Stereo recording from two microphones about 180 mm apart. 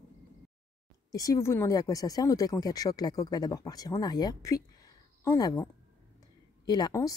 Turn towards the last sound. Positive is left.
turn(degrees=20)  # may be behind; listen again after turning